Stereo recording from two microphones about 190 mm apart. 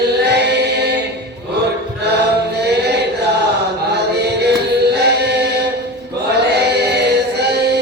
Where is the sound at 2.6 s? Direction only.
60° right (ahead or behind).